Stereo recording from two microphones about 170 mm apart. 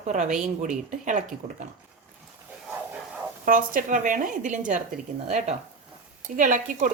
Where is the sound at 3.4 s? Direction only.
55° right (ahead or behind).